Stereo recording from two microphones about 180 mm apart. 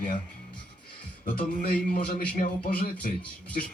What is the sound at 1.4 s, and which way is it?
A man's voice, 60° left (ahead or behind).